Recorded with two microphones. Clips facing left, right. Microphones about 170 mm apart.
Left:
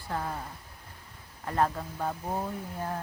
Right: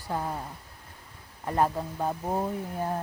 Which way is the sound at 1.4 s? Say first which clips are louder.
Right 2 dB; 20° right (ahead or behind).